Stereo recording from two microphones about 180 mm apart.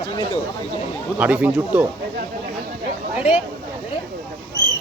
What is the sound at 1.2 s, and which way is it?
Speech, 5° right (ahead or behind).